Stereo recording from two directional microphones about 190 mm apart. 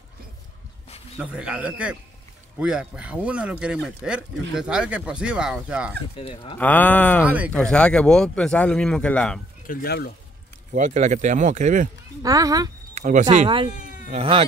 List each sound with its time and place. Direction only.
1.1 s speech: 5° right (ahead or behind)
6.1 s speech: 25° left (ahead or behind)
6.6 s speech: 10° left (ahead or behind)
7.2 s speech: 10° right (ahead or behind)
7.5 s speech: 5° left (ahead or behind)
9.7 s speech: 50° left (ahead or behind)
10.7 s speech: 40° right (ahead or behind)
12.2 s speech: 20° right (ahead or behind)
12.9 s a sound: 40° right (ahead or behind)
14.1 s speech: 30° right (ahead or behind)